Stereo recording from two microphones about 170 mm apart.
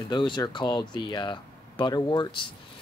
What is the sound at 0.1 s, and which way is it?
A man's voice, 25° left (ahead or behind).